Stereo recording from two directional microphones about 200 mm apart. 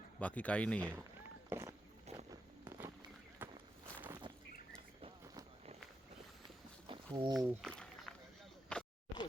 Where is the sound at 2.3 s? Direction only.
15° right (ahead or behind).